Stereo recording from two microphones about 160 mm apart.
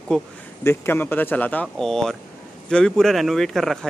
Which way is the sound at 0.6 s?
15° left (ahead or behind).